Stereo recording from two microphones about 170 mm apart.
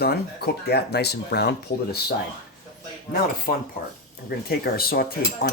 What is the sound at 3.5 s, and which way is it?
Speech, 60° left (ahead or behind).